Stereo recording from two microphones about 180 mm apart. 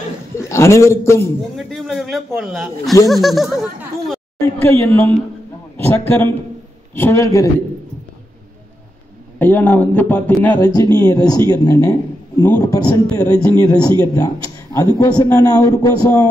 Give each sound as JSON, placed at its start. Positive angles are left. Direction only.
{"t": 0.4, "sound": "a man's voice", "side_deg": 15}
{"t": 1.6, "sound": "a man's voice", "side_deg": 0}
{"t": 4.8, "sound": "a man's voice", "side_deg": 15}
{"t": 9.4, "sound": "a man's voice", "side_deg": 10}